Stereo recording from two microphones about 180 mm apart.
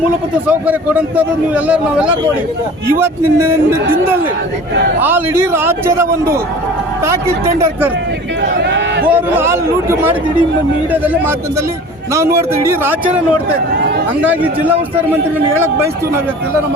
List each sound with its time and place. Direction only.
0.4 s a man's voice: 10° right (ahead or behind)
5.0 s a man's voice: 10° right (ahead or behind)
8.4 s a sound: 75° right (ahead or behind)
9.0 s a man's voice: 10° right (ahead or behind)
12.1 s a man's voice: 15° right (ahead or behind)